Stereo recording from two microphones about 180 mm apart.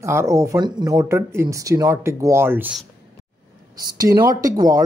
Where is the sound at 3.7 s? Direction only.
20° right (ahead or behind).